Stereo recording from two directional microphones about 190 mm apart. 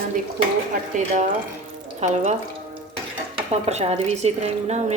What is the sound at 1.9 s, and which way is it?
Speech, 40° right (ahead or behind).